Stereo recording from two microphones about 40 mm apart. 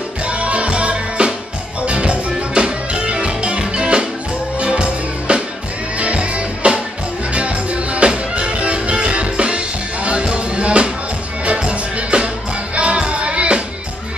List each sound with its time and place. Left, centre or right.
0.2 s music: right